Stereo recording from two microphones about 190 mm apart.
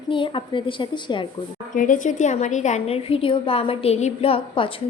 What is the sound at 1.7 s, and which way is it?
A woman's voice, 45° left (ahead or behind).